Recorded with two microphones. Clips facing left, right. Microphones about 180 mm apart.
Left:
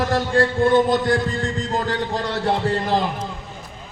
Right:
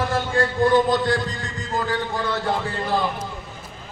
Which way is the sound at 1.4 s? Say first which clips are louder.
Left 4 dB; 35° left (ahead or behind).